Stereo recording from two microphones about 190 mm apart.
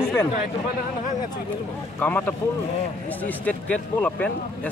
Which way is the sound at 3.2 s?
10° left (ahead or behind).